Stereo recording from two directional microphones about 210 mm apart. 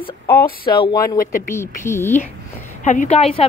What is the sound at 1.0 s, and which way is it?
Speech, 40° left (ahead or behind).